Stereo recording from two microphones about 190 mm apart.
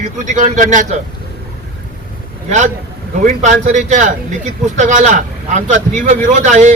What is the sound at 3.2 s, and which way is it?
Speech, 40° right (ahead or behind).